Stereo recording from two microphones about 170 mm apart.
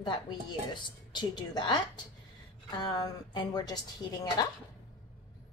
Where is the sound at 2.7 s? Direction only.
25° left (ahead or behind).